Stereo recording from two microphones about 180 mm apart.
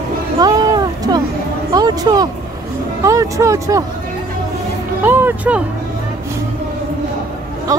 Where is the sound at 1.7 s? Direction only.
20° right (ahead or behind).